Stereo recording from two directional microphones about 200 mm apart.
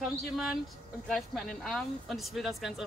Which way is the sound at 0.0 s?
Centre (ahead or behind).